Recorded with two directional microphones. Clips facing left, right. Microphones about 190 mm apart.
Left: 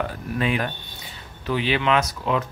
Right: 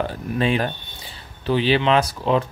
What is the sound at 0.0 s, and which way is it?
Speech, 30° right (ahead or behind).